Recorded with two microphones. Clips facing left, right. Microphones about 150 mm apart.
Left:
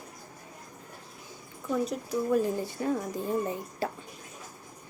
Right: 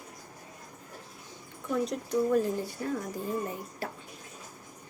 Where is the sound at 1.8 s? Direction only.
5° left (ahead or behind).